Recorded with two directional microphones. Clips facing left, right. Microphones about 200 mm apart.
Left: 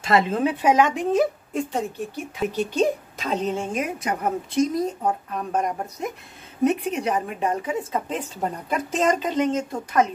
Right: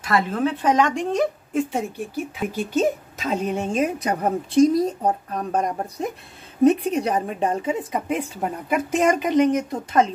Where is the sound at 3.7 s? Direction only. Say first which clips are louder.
Right 4 dB; 35° right (ahead or behind).